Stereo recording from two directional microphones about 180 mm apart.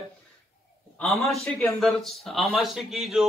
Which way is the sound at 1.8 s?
Centre (ahead or behind).